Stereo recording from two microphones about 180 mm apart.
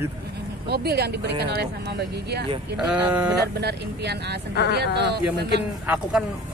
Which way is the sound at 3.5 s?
65° right (ahead or behind).